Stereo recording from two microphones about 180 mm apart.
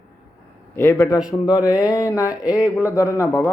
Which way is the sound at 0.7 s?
15° left (ahead or behind).